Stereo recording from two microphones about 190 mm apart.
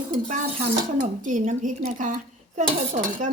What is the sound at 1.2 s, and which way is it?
Speech, 45° right (ahead or behind).